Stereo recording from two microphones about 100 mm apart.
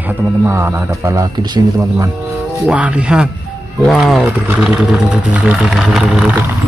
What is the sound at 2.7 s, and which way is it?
Speech, 10° right (ahead or behind).